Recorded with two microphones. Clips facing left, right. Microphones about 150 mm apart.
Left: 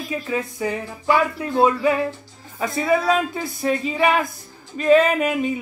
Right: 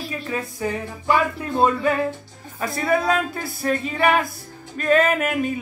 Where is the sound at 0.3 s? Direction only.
15° left (ahead or behind).